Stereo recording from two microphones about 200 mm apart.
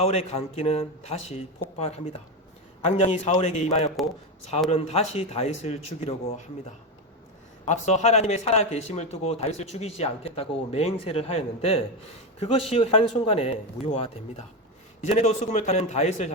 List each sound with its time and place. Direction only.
0.0 s a man's voice: 30° left (ahead or behind)
7.6 s a man's voice: 35° left (ahead or behind)